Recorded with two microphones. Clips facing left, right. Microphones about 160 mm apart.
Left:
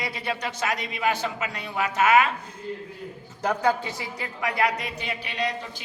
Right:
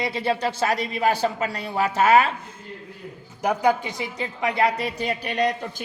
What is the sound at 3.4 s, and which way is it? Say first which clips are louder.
A man's voice: right 3 dB; 15° right (ahead or behind).